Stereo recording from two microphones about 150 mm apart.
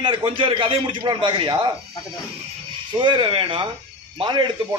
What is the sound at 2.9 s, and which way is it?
A man's voice, 35° right (ahead or behind).